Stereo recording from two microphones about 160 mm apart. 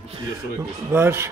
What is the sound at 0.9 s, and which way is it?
Speech, 15° right (ahead or behind).